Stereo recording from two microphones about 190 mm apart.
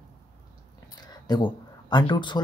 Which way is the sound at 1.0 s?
20° left (ahead or behind).